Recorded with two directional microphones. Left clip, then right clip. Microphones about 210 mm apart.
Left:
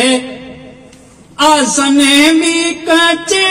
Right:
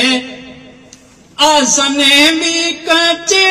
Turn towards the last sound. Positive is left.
turn(degrees=-35)  # may be behind; listen again after turning